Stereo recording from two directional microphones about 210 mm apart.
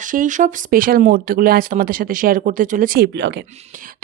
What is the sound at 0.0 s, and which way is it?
Speech, 40° right (ahead or behind).